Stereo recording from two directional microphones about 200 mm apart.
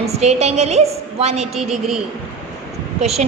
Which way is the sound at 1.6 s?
Centre (ahead or behind).